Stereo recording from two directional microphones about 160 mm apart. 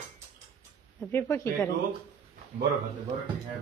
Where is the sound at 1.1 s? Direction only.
15° left (ahead or behind).